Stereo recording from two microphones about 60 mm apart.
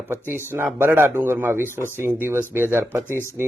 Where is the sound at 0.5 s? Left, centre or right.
Right.